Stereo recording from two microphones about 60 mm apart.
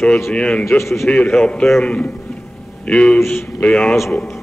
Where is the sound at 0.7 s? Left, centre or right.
Left.